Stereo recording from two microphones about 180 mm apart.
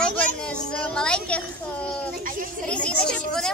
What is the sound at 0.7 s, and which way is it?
Speech, 5° left (ahead or behind).